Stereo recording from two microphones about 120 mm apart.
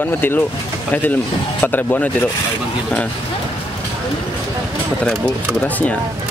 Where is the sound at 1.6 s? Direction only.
15° left (ahead or behind).